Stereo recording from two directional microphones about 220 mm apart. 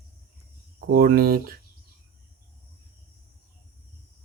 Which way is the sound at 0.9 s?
40° right (ahead or behind).